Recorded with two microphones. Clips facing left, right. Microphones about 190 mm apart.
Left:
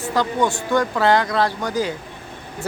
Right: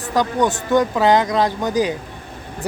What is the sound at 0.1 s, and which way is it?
Speech, 15° right (ahead or behind).